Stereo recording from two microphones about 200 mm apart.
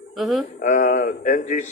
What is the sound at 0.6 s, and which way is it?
Speech, 40° left (ahead or behind).